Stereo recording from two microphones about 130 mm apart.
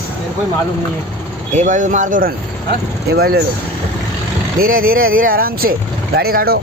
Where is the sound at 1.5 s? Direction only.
75° right (ahead or behind).